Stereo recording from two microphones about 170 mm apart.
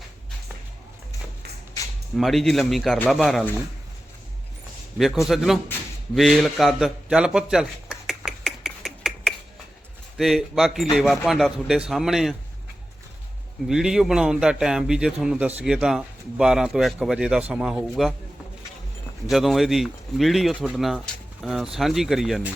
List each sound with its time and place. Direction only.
2.1 s a man's voice: centre (ahead or behind)
4.9 s a man's voice: centre (ahead or behind)
6.1 s a sound: centre (ahead or behind)
10.2 s a man's voice: centre (ahead or behind)
13.7 s a man's voice: centre (ahead or behind)
19.3 s a man's voice: centre (ahead or behind)